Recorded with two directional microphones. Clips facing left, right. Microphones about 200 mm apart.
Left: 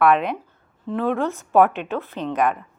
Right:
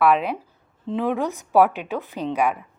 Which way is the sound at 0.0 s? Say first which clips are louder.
Left 1 dB; 5° right (ahead or behind).